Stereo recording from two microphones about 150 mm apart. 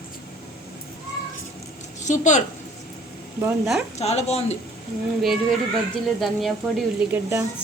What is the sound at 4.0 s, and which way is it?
Speech, 45° left (ahead or behind).